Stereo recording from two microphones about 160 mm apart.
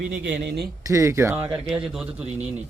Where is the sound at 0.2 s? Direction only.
90° right.